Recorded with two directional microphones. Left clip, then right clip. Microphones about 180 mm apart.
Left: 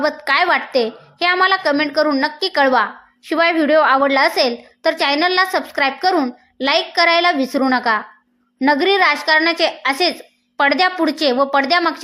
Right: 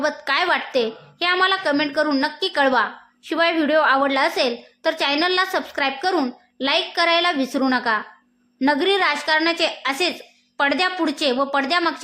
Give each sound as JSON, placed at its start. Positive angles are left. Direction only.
{"t": 0.0, "sound": "a woman's voice", "side_deg": 15}